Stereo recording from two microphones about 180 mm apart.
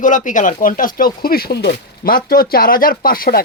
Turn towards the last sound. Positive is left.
turn(degrees=55)  # may be behind; listen again after turning